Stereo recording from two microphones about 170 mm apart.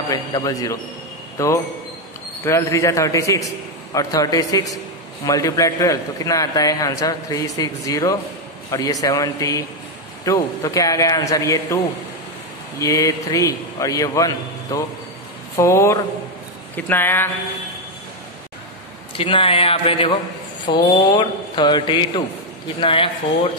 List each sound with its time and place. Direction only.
0.1 s a man's voice: 20° left (ahead or behind)
19.1 s a man's voice: 30° left (ahead or behind)